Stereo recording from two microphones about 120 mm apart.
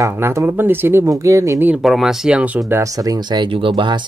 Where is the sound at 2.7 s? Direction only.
25° right (ahead or behind); by 4.0 s 45° right (ahead or behind).